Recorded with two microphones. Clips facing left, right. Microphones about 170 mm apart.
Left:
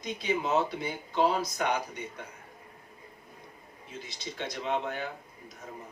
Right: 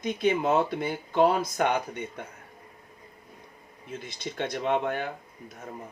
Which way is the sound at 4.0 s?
55° right (ahead or behind).